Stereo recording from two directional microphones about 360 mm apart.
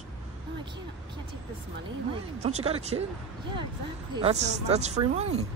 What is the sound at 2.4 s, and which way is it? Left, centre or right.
Speech, centre.